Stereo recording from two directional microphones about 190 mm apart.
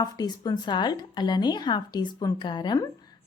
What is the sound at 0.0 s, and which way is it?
Speech, 20° left (ahead or behind).